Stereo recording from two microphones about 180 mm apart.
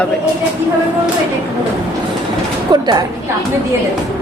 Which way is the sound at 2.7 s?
25° right (ahead or behind).